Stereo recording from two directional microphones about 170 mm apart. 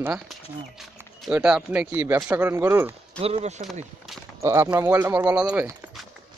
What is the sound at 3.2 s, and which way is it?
Speech, 35° right (ahead or behind).